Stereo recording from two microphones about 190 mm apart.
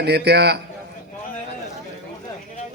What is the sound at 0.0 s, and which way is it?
Speech, 60° right (ahead or behind).